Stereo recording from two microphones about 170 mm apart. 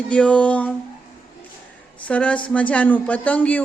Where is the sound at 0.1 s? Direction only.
5° left (ahead or behind).